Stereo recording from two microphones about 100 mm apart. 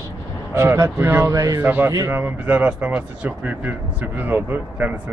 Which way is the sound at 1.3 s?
35° right (ahead or behind).